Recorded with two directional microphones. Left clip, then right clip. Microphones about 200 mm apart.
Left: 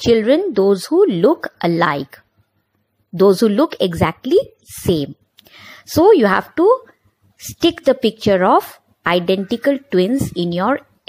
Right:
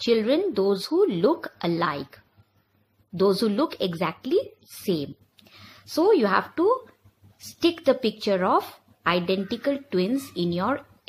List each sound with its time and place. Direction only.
0.0 s a woman's voice: 30° left (ahead or behind)
3.2 s a woman's voice: 35° left (ahead or behind)